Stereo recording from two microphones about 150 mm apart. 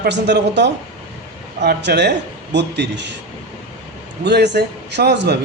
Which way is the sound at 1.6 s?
90° right.